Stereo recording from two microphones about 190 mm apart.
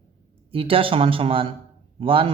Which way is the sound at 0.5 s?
30° right (ahead or behind).